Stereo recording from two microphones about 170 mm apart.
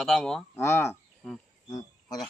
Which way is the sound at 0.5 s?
15° left (ahead or behind).